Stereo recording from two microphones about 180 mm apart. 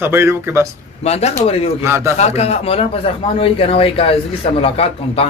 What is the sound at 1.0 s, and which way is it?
Speech, 35° left (ahead or behind).